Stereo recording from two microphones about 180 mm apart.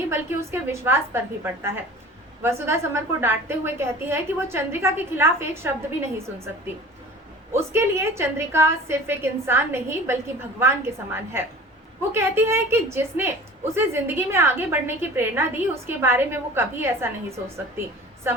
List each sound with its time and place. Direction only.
0.1 s a woman's voice: 15° right (ahead or behind)
7.5 s a woman's voice: 15° right (ahead or behind)